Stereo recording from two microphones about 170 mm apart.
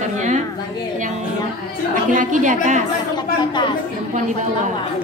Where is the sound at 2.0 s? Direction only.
50° right (ahead or behind).